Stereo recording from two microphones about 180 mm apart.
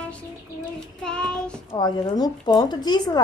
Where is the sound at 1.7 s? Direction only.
25° left (ahead or behind).